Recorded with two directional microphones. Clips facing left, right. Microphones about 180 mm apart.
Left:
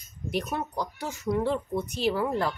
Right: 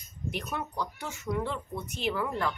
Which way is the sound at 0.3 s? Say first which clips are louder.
Left 5 dB; 35° left (ahead or behind).